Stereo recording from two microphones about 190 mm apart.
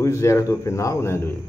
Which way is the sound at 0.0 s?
15° left (ahead or behind).